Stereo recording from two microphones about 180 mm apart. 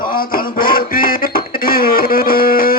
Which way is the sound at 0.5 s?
55° left (ahead or behind).